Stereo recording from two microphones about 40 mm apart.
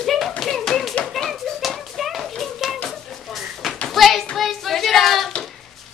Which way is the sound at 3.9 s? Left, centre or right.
Centre.